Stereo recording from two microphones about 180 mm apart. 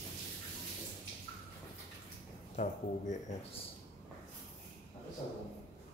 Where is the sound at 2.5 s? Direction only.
40° left (ahead or behind).